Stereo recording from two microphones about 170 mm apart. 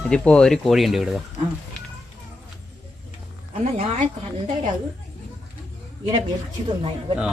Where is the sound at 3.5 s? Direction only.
40° right (ahead or behind).